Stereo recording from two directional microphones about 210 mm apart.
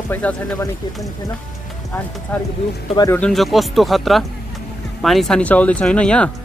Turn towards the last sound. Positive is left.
turn(degrees=5)  # may be behind; listen again after turning